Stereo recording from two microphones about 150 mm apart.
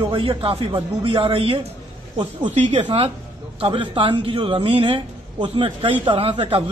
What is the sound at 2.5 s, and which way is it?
Speech, 50° right (ahead or behind).